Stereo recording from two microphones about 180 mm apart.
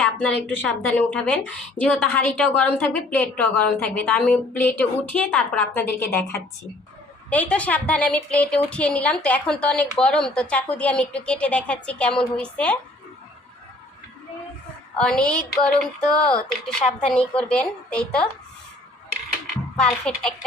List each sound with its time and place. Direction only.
0.0 s a sound: 5° left (ahead or behind)
0.4 s a woman's voice: 10° left (ahead or behind)
14.9 s speech: 5° left (ahead or behind)
19.8 s speech: 5° left (ahead or behind)